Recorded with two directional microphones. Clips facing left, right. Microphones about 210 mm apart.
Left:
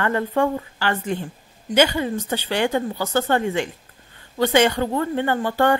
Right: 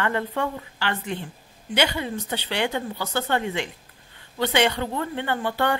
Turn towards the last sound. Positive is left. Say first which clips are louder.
# left 5 dB
turn(degrees=45)  # may be behind; listen again after turning